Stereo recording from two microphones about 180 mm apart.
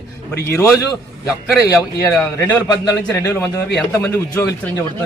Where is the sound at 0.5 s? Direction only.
15° left (ahead or behind).